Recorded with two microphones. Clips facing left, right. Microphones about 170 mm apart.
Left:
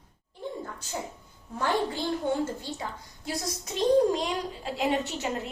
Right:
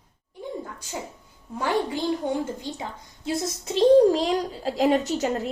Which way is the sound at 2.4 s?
15° right (ahead or behind).